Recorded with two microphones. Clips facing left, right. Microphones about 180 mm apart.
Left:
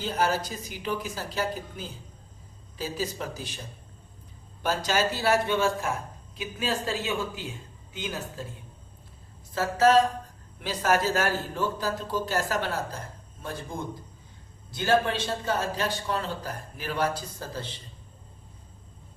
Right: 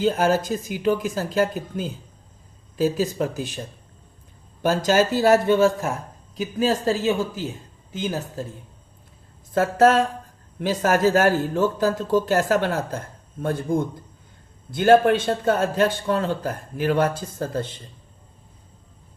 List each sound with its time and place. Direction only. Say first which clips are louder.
0.0 s a man's voice: right 7 dB; 50° right (ahead or behind)
9.5 s a man's voice: right 4 dB; 55° right (ahead or behind)